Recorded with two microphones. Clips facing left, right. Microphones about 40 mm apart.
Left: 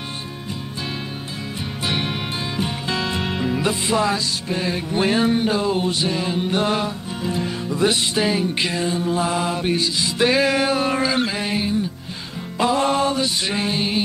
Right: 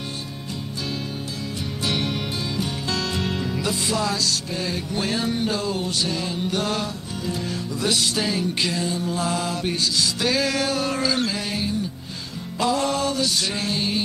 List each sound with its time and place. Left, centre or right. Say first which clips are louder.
1.9 s music: left 1 dB; left